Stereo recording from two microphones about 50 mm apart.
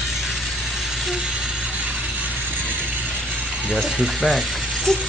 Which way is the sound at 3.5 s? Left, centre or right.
Centre.